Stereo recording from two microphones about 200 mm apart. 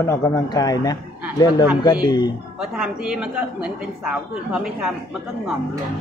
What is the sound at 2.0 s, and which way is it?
Speech, 20° left (ahead or behind).